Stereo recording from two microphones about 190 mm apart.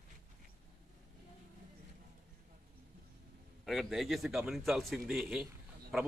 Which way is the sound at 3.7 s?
Centre (ahead or behind).